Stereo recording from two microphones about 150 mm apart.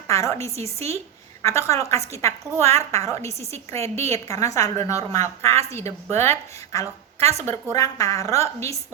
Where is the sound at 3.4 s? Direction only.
45° right (ahead or behind).